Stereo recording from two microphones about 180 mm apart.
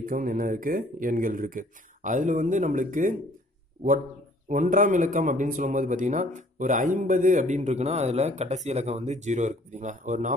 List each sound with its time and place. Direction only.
0.0 s speech: 50° right (ahead or behind)
4.5 s speech: 45° right (ahead or behind)